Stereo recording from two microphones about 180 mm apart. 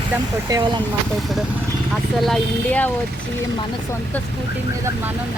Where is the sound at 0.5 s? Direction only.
25° right (ahead or behind).